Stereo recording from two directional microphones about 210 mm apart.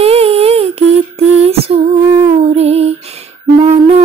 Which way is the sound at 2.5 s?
30° right (ahead or behind).